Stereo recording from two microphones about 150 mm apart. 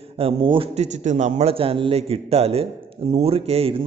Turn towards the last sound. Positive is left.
turn(degrees=-40)  # may be behind; listen again after turning